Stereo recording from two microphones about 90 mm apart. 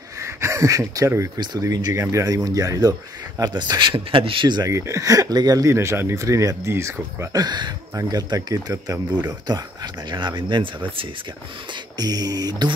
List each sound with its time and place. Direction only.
0.2 s speech: 35° right (ahead or behind); by 3.9 s 50° right (ahead or behind)
3.9 s a man's voice: 75° right (ahead or behind)
4.6 s speech: 35° right (ahead or behind)
7.3 s speech: 50° right (ahead or behind)
7.9 s speech: 40° right (ahead or behind); by 11.1 s 65° right (ahead or behind)
12.0 s speech: 45° right (ahead or behind)